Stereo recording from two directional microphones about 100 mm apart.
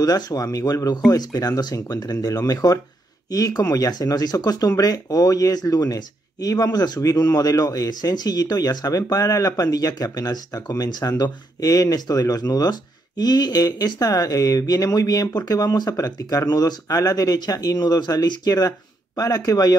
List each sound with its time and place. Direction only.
0.0 s speech: 40° left (ahead or behind)